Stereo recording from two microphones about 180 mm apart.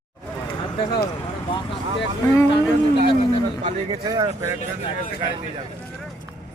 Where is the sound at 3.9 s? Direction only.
25° right (ahead or behind).